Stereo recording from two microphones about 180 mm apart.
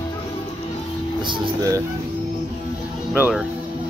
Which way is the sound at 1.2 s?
25° right (ahead or behind).